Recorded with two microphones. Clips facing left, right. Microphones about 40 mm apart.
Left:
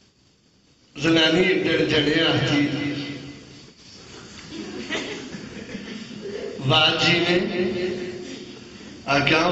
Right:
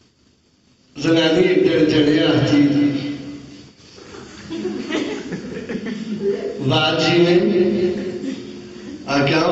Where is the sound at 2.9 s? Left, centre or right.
Centre.